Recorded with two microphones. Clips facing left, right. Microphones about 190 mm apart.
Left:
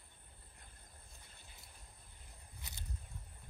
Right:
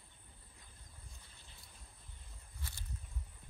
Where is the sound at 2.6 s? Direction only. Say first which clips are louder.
Right 2 dB; 20° left (ahead or behind).